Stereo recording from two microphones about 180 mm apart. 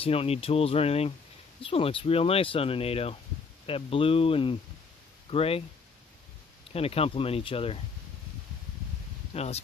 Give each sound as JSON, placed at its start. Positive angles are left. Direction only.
{"t": 0.0, "sound": "speech", "side_deg": 30}
{"t": 6.7, "sound": "speech", "side_deg": 35}
{"t": 9.3, "sound": "speech", "side_deg": 35}